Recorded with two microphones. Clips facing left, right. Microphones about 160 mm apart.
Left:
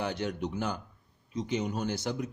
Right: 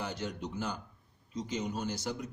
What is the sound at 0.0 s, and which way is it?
A man's voice, 65° left (ahead or behind).